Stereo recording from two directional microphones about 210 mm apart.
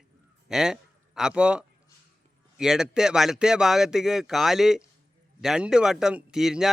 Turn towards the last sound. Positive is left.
turn(degrees=0)  # may be behind; listen again after turning